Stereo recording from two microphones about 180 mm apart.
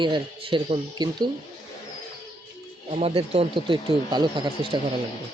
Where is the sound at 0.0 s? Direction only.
25° right (ahead or behind).